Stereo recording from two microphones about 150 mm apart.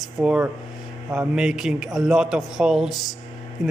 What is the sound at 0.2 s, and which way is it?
A man's voice, 10° right (ahead or behind).